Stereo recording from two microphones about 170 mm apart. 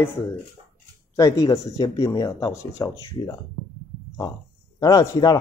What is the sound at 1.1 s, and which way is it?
Speech, 20° left (ahead or behind).